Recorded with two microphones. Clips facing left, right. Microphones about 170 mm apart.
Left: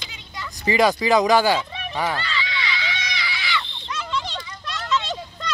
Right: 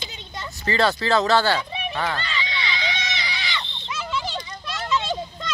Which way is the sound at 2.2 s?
20° right (ahead or behind).